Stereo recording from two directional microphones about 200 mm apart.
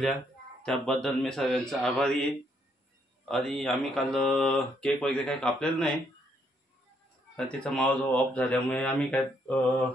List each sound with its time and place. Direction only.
0.0 s speech: centre (ahead or behind)
3.3 s speech: centre (ahead or behind)
7.3 s speech: 5° left (ahead or behind)